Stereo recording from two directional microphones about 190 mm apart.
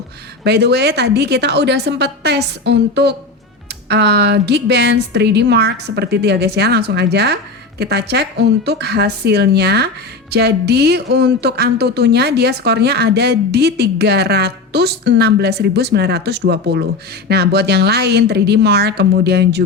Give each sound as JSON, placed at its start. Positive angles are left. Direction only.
{"t": 0.4, "sound": "speech", "side_deg": -60}